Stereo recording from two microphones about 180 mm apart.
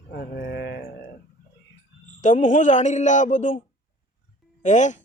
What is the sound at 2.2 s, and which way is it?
Speech, 45° left (ahead or behind).